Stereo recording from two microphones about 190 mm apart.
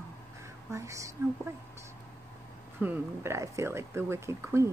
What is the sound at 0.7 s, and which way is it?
Speech, 15° right (ahead or behind).